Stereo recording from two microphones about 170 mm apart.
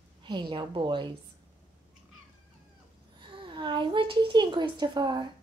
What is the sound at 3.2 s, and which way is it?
A woman's voice, 30° right (ahead or behind).